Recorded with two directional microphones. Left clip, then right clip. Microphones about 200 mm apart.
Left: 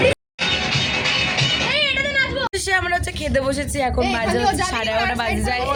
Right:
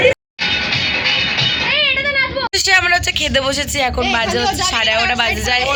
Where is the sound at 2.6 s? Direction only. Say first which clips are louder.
Right 9 dB; 5° left (ahead or behind).